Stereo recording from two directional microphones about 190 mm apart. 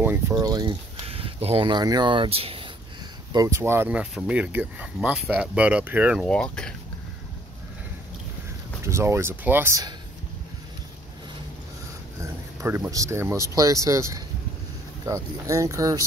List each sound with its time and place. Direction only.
0.0 s speech: 10° right (ahead or behind); by 2.7 s 30° right (ahead or behind)
3.3 s speech: 15° right (ahead or behind)
6.2 s speech: 5° left (ahead or behind)
8.8 s speech: 15° right (ahead or behind)
12.2 s speech: 15° right (ahead or behind)